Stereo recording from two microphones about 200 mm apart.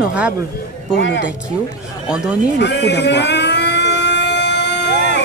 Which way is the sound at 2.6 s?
60° left (ahead or behind).